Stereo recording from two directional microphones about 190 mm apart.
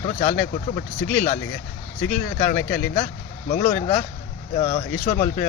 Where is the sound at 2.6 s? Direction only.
10° left (ahead or behind).